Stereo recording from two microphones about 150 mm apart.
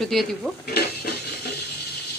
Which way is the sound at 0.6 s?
90° left.